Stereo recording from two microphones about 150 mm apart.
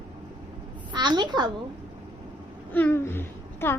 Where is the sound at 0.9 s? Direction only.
30° right (ahead or behind).